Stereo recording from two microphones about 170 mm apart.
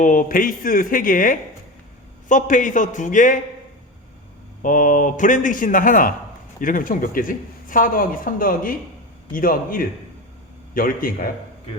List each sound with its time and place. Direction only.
0.0 s a man's voice: 50° left (ahead or behind)
4.6 s a man's voice: 50° left (ahead or behind)